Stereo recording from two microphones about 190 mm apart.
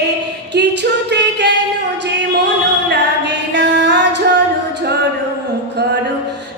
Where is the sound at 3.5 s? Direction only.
65° right (ahead or behind).